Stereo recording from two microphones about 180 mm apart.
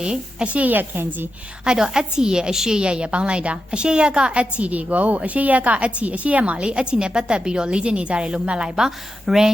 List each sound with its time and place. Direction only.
0.0 s a woman's voice: 5° right (ahead or behind)